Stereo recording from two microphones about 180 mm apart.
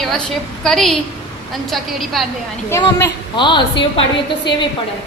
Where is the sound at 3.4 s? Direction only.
25° left (ahead or behind).